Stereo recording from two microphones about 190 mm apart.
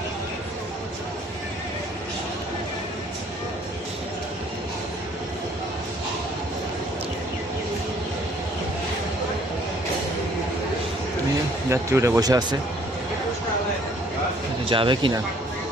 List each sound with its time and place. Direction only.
11.7 s speech: 15° right (ahead or behind)
14.7 s speech: 25° right (ahead or behind)